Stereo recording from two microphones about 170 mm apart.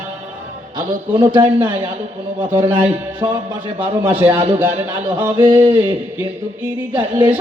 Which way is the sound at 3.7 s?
10° right (ahead or behind).